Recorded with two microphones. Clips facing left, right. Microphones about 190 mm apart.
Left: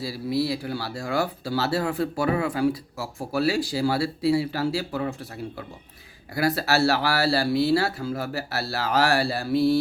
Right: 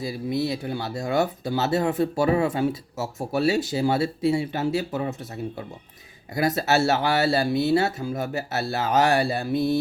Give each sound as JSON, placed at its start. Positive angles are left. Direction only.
{"t": 0.0, "sound": "speech", "side_deg": -20}